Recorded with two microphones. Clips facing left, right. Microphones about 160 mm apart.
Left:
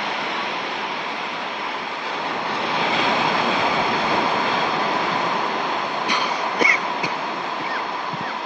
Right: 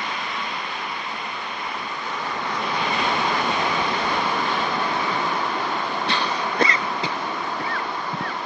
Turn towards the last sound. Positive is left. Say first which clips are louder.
# left 1 dB
turn(degrees=10)  # may be behind; listen again after turning